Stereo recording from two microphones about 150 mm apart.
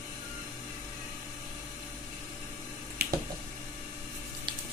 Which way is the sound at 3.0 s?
90° right.